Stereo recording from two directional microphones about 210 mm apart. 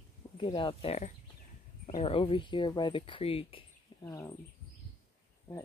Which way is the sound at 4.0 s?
10° left (ahead or behind).